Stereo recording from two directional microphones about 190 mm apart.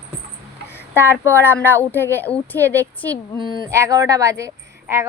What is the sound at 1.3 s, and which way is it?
Speech, 10° left (ahead or behind).